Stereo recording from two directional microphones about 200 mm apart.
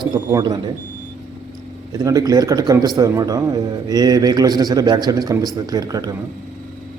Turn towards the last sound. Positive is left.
turn(degrees=-20)  # may be behind; listen again after turning